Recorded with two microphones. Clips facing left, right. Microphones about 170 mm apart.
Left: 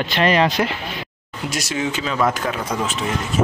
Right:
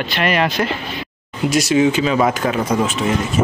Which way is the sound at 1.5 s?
10° right (ahead or behind).